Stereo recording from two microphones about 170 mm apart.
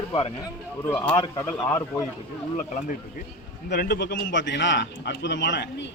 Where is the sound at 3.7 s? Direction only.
75° left (ahead or behind).